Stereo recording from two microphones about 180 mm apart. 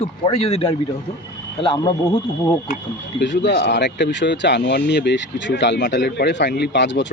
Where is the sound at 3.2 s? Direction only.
75° left (ahead or behind).